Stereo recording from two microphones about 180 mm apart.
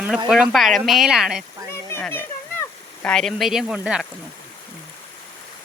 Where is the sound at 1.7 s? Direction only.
15° left (ahead or behind); by 4.0 s 5° right (ahead or behind).